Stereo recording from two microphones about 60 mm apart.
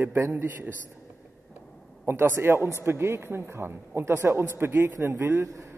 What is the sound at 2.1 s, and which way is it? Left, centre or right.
A man's voice, right.